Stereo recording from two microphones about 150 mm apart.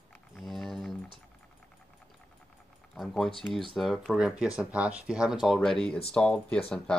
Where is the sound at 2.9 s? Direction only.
Centre (ahead or behind).